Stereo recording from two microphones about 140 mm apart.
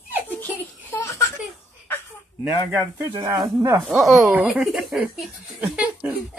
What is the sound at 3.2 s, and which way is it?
Speech, 25° right (ahead or behind).